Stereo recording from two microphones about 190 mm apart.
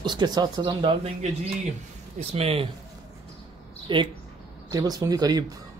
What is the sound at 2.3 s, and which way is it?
Speech, 30° right (ahead or behind).